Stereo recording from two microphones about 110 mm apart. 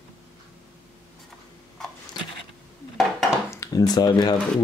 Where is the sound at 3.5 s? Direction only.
30° left (ahead or behind).